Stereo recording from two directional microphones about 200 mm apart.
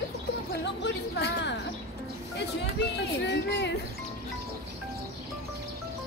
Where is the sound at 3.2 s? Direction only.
60° left (ahead or behind).